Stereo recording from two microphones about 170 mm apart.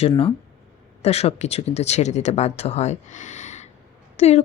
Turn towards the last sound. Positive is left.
turn(degrees=35)  # may be behind; listen again after turning